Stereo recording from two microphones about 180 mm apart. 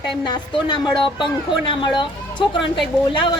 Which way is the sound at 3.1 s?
25° left (ahead or behind).